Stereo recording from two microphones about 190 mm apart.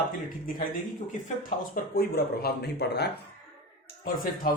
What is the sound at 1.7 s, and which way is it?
Speech, 50° left (ahead or behind).